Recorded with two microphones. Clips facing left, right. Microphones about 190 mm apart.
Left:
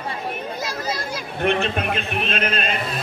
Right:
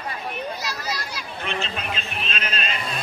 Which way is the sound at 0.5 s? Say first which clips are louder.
Left 4 dB; 50° left (ahead or behind).